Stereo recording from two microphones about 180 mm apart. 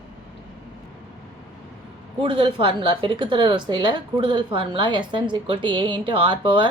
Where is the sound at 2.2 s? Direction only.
30° right (ahead or behind).